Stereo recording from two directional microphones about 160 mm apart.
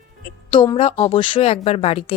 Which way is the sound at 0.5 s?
30° left (ahead or behind).